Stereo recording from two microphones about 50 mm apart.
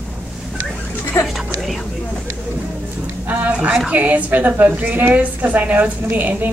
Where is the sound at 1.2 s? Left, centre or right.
Left.